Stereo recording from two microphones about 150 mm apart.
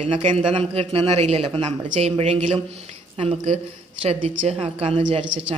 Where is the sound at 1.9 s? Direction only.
50° right (ahead or behind).